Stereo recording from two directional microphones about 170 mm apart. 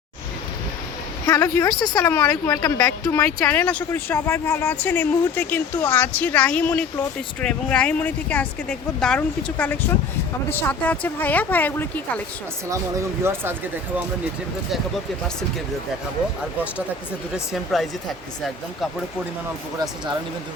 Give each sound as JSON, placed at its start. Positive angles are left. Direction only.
{"t": 1.3, "sound": "speech", "side_deg": 20}
{"t": 2.0, "sound": "speech", "side_deg": 10}
{"t": 12.7, "sound": "speech", "side_deg": -15}
{"t": 17.3, "sound": "speech", "side_deg": 0}